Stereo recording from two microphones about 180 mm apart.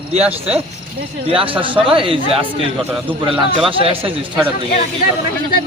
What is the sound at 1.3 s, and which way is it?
A man's voice, 30° right (ahead or behind).